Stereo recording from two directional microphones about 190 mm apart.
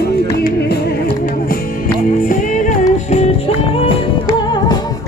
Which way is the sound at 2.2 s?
40° left (ahead or behind).